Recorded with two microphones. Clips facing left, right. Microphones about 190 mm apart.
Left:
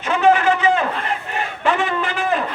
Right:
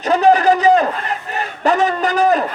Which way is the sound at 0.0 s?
40° right (ahead or behind).